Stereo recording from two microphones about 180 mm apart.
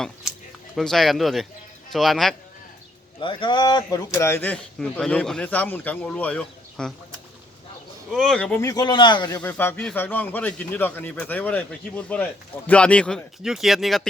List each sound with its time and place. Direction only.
0.8 s speech: centre (ahead or behind)
3.2 s speech: 25° left (ahead or behind); by 6.9 s 5° left (ahead or behind)
8.1 s speech: 5° left (ahead or behind)
8.6 s speech: 20° left (ahead or behind)
9.4 s speech: 10° left (ahead or behind)